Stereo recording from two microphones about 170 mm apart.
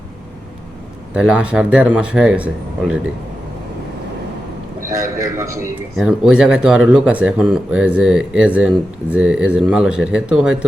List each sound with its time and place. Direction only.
1.1 s speech: 5° right (ahead or behind)
5.4 s speech: 15° right (ahead or behind)
6.0 s speech: 5° right (ahead or behind)